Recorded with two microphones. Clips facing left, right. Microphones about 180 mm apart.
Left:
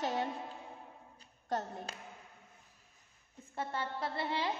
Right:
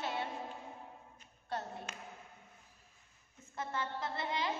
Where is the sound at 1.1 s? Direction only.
35° left (ahead or behind).